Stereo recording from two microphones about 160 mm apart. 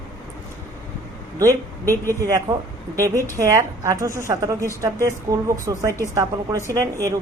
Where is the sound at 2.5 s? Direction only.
20° right (ahead or behind).